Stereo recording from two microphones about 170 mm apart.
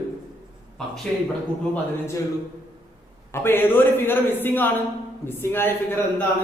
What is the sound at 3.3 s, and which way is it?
A man's voice, 15° left (ahead or behind).